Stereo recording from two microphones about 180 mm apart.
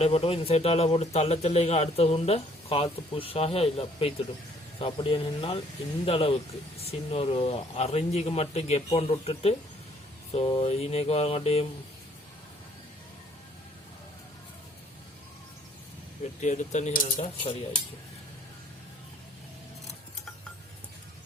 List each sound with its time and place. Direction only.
0.0 s speech: 35° left (ahead or behind)
16.4 s speech: 40° left (ahead or behind)